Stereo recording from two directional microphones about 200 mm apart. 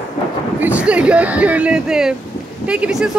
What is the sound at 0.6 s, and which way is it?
A woman's voice, 5° right (ahead or behind).